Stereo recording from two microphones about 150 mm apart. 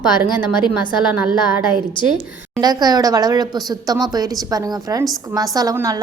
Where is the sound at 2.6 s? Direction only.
25° right (ahead or behind).